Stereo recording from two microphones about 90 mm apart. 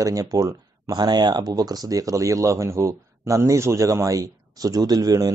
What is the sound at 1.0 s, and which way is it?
Speech, 55° right (ahead or behind).